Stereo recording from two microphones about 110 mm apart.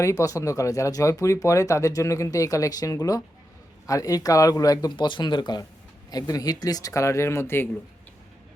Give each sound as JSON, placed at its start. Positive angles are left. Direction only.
{"t": 0.0, "sound": "speech", "side_deg": 30}